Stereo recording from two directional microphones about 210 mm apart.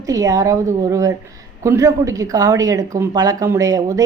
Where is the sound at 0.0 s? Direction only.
15° right (ahead or behind).